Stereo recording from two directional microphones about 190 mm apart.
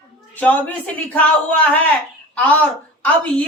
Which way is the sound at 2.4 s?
5° left (ahead or behind).